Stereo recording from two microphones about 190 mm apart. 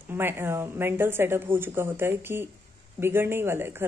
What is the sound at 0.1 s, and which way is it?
Speech, 10° right (ahead or behind).